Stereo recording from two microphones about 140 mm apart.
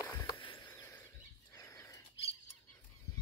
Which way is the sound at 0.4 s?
35° left (ahead or behind).